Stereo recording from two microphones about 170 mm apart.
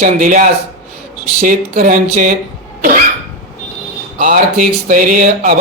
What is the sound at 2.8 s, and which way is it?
Cough, 55° right (ahead or behind).